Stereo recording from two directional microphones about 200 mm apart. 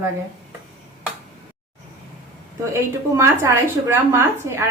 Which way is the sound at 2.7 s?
15° right (ahead or behind).